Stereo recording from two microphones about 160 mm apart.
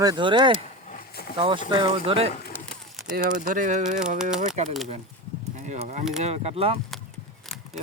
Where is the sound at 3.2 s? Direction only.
55° right (ahead or behind); by 6.7 s 40° right (ahead or behind).